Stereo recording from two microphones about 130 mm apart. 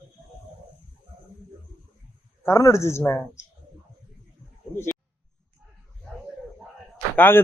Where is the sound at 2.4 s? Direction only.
20° left (ahead or behind).